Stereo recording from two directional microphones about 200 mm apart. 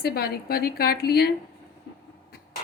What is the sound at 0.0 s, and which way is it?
A woman's voice, 50° left (ahead or behind).